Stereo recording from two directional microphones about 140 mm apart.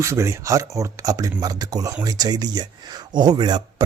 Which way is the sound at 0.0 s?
20° right (ahead or behind).